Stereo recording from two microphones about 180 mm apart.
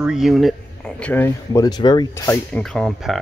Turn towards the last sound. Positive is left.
turn(degrees=0)  # may be behind; listen again after turning